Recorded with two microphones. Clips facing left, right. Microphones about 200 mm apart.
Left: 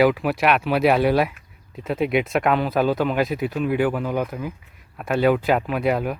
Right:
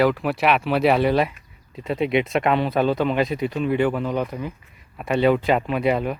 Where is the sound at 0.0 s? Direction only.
5° left (ahead or behind).